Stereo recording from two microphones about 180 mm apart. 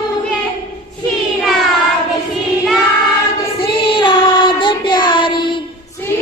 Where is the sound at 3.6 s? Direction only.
25° left (ahead or behind).